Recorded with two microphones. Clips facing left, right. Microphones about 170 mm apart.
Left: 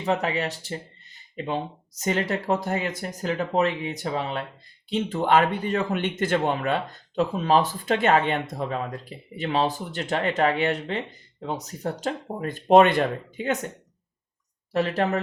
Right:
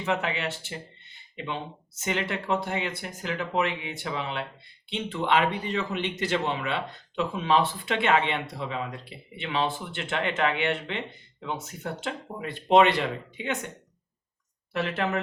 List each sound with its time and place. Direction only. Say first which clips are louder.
0.0 s speech: left 3 dB; 35° left (ahead or behind)
14.7 s speech: left 4 dB; 35° left (ahead or behind)